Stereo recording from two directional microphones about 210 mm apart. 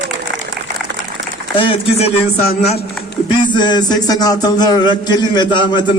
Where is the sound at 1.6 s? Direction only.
25° left (ahead or behind).